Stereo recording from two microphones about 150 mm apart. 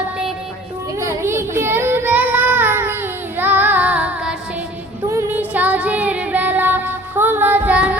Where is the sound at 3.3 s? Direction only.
10° right (ahead or behind).